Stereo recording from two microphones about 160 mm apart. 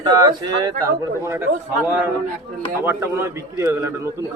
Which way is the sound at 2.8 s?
15° right (ahead or behind).